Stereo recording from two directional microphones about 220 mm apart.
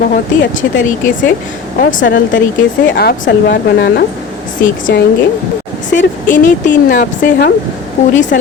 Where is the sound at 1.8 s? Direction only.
40° left (ahead or behind).